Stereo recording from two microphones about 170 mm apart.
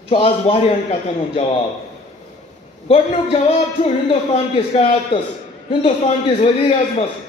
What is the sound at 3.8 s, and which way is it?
A man's voice, 35° left (ahead or behind).